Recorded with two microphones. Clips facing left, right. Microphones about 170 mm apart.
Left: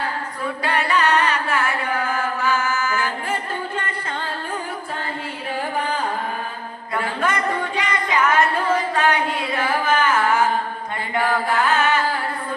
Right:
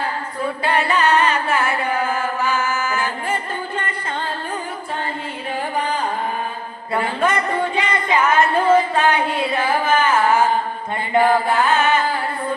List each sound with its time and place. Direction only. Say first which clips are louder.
0.6 s music: right 2 dB; 25° right (ahead or behind)
6.9 s a sound: right 3 dB; 25° right (ahead or behind)
11.1 s singing: right 5 dB; 25° right (ahead or behind)